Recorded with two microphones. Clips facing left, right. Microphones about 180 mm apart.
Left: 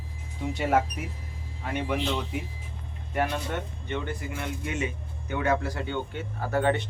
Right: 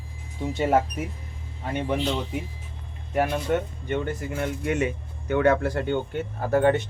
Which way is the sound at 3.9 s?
45° right (ahead or behind).